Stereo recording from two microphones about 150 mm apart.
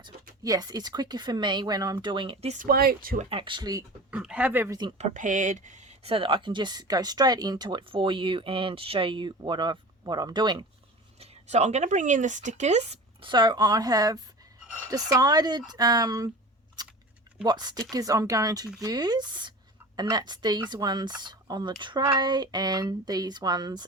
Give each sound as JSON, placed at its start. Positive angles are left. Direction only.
{"t": 0.0, "sound": "speech", "side_deg": -25}
{"t": 2.6, "sound": "speech", "side_deg": -85}
{"t": 3.2, "sound": "speech", "side_deg": -35}
{"t": 4.1, "sound": "speech", "side_deg": -5}
{"t": 4.9, "sound": "speech", "side_deg": -55}
{"t": 11.2, "sound": "speech", "side_deg": -50}
{"t": 13.2, "sound": "speech", "side_deg": -30}
{"t": 16.8, "sound": "a sound", "side_deg": -25}
{"t": 17.4, "sound": "speech", "side_deg": -30}